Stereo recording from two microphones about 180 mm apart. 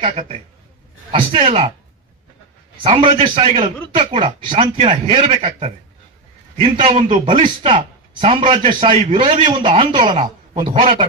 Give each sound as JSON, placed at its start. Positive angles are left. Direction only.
{"t": 1.4, "sound": "a man's voice", "side_deg": -30}
{"t": 2.8, "sound": "a man's voice", "side_deg": -30}
{"t": 10.1, "sound": "a sound", "side_deg": -40}
{"t": 10.6, "sound": "a man's voice", "side_deg": -30}